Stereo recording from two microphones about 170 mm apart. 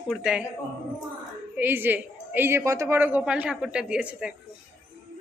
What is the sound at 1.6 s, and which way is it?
A woman's voice, 10° right (ahead or behind).